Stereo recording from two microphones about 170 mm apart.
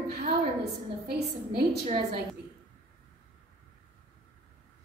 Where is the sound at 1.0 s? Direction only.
70° right (ahead or behind).